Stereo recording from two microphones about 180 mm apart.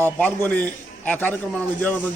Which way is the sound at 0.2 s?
10° left (ahead or behind).